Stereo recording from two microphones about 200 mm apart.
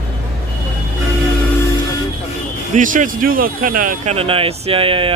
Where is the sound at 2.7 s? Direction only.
40° right (ahead or behind).